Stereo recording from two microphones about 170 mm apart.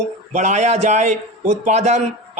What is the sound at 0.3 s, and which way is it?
Speech, 45° right (ahead or behind).